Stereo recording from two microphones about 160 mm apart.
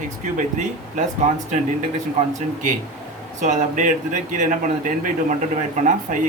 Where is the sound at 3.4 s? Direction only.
50° right (ahead or behind).